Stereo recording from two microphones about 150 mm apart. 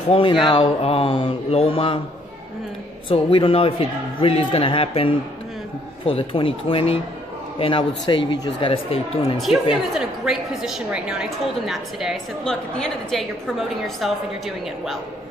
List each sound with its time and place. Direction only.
0.1 s speech: 35° left (ahead or behind)
3.1 s speech: 35° left (ahead or behind)
9.9 s a woman's voice: 5° right (ahead or behind)